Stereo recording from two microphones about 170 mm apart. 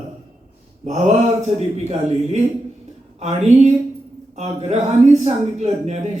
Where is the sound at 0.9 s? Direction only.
40° right (ahead or behind).